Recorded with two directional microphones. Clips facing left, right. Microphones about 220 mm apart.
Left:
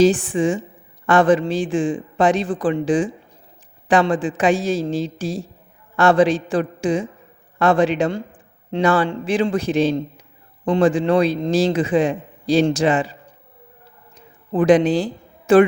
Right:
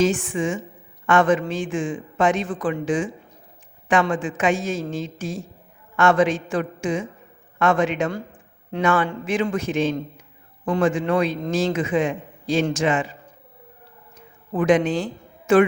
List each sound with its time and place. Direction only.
0.0 s a man's voice: 35° left (ahead or behind)
14.5 s a woman's voice: 35° left (ahead or behind)